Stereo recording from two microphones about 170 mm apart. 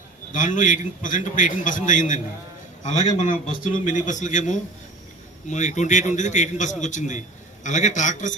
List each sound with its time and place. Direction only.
0.3 s a man's voice: 50° left (ahead or behind)